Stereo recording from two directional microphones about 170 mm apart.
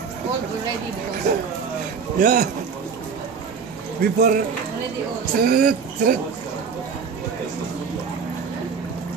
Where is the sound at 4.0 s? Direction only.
60° right (ahead or behind).